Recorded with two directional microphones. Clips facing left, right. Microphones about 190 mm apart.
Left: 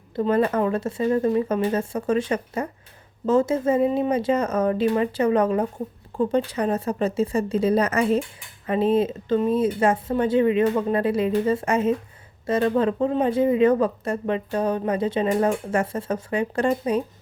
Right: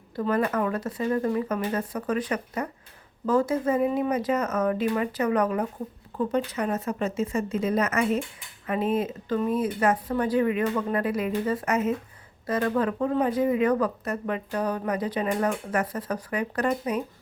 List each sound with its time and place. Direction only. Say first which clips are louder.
0.2 s speech: left 4 dB; 25° left (ahead or behind)